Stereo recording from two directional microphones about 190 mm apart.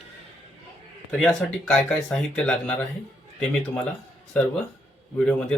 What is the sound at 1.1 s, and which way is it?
Speech, centre (ahead or behind).